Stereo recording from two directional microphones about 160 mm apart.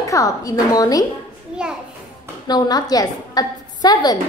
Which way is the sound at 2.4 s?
25° left (ahead or behind).